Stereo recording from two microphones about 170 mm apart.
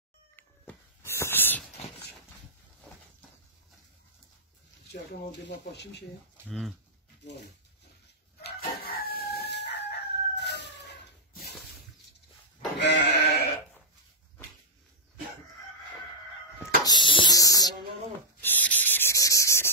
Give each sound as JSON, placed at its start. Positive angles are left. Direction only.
{"t": 0.4, "sound": "a sound", "side_deg": 15}
{"t": 5.7, "sound": "speech", "side_deg": 85}
{"t": 8.4, "sound": "crowing", "side_deg": 65}
{"t": 12.7, "sound": "sheep", "side_deg": 90}
{"t": 16.8, "sound": "a sound", "side_deg": 25}
{"t": 18.4, "sound": "rub", "side_deg": 10}